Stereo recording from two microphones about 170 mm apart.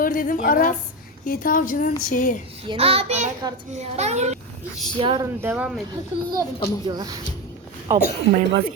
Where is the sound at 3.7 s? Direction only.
40° right (ahead or behind).